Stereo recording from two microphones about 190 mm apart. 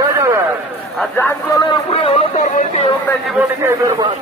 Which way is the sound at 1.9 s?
30° left (ahead or behind).